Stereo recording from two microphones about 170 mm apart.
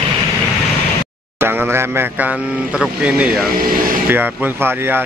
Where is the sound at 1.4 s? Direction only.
15° right (ahead or behind).